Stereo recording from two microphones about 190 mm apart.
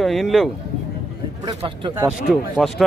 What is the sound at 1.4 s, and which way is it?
Speech, 25° right (ahead or behind).